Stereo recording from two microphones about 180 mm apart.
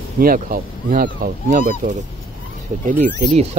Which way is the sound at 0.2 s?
50° right (ahead or behind).